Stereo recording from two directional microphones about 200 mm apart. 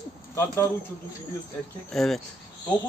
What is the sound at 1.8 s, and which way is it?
Speech, centre (ahead or behind).